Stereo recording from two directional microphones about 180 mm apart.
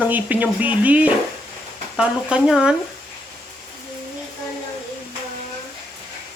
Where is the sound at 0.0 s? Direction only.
10° right (ahead or behind).